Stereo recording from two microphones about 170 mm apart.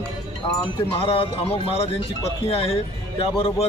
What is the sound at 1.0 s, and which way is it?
A man's voice, 35° left (ahead or behind).